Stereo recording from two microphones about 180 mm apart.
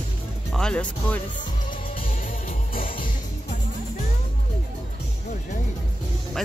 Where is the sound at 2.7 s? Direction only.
50° left (ahead or behind).